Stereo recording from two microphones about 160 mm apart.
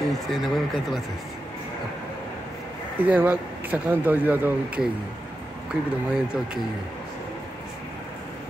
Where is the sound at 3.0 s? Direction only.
10° right (ahead or behind).